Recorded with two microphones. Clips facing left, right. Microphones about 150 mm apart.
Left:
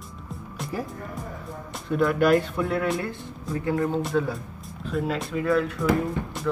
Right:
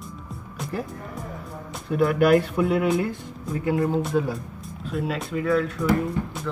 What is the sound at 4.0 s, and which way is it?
Speech, centre (ahead or behind).